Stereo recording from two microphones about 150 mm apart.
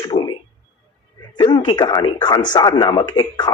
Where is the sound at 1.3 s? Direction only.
30° left (ahead or behind).